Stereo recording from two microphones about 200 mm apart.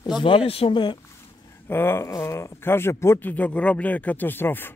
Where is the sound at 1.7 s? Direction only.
10° left (ahead or behind).